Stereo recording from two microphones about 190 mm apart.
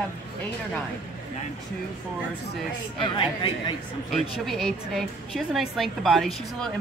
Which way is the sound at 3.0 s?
25° left (ahead or behind).